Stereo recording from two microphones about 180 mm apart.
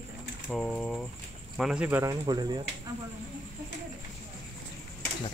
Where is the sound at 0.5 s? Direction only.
Centre (ahead or behind); by 2.6 s 25° right (ahead or behind).